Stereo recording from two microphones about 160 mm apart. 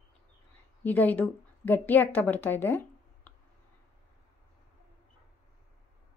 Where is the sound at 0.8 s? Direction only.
10° left (ahead or behind).